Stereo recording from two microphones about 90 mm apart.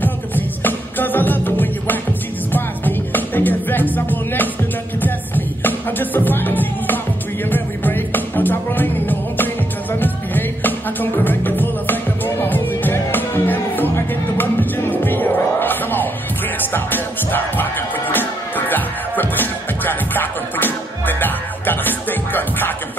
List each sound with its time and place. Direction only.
0.0 s music: 20° left (ahead or behind)